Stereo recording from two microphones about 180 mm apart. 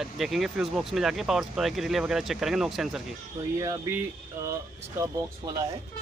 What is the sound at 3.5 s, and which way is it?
Speech, 20° right (ahead or behind).